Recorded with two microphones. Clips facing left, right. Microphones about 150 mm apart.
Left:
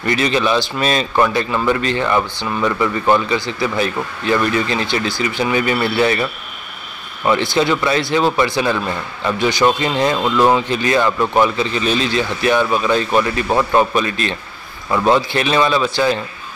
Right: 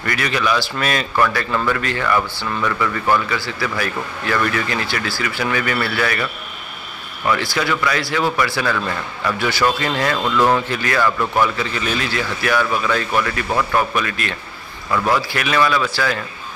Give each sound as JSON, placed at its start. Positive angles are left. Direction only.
{"t": 0.0, "sound": "speech", "side_deg": 25}
{"t": 7.2, "sound": "speech", "side_deg": 25}